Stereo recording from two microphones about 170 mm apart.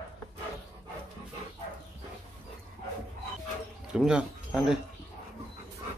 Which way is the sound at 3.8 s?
5° right (ahead or behind).